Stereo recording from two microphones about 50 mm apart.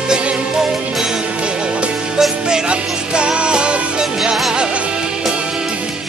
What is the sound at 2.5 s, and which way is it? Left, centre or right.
Music, centre.